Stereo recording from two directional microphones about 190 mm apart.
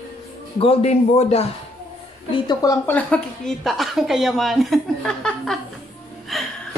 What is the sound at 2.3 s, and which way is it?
Speech, 20° left (ahead or behind).